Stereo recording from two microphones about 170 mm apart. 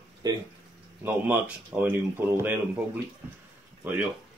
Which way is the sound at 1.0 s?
10° right (ahead or behind).